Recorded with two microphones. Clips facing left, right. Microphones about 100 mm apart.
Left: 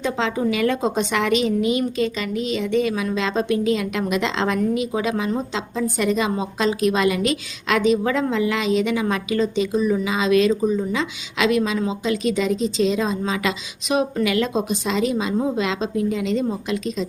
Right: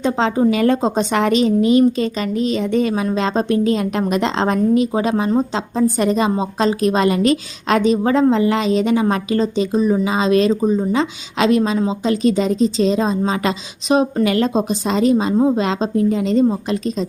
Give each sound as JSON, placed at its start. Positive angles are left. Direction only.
{"t": 0.0, "sound": "speech", "side_deg": -35}